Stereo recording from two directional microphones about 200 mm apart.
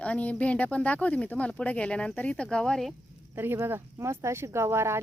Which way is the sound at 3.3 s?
10° right (ahead or behind).